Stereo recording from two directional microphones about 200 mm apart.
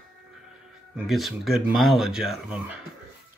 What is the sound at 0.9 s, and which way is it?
Speech, centre (ahead or behind).